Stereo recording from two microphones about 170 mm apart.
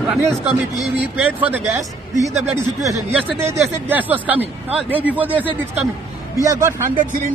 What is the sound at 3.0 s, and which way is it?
Speech, 40° right (ahead or behind).